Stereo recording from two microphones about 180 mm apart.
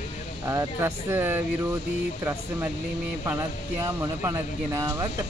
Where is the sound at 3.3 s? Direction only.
15° right (ahead or behind).